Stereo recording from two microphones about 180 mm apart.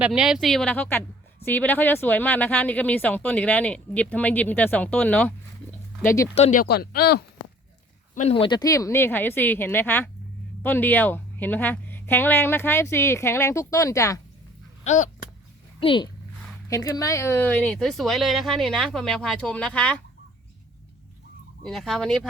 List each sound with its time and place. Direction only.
0.0 s speech: 5° right (ahead or behind); by 6.2 s 15° left (ahead or behind)
6.3 s speech: 35° left (ahead or behind)
6.6 s speech: 60° left (ahead or behind)
8.1 s speech: 35° left (ahead or behind); by 14.2 s 15° left (ahead or behind)
14.8 s speech: 45° left (ahead or behind)
15.8 s a child's voice: 30° left (ahead or behind)
16.6 s speech: 20° left (ahead or behind)
21.6 s speech: centre (ahead or behind)